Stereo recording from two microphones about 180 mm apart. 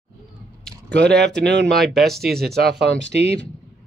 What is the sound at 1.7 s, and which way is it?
Speech, centre (ahead or behind).